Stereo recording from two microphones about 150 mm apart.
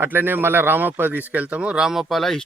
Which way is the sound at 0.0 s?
15° right (ahead or behind).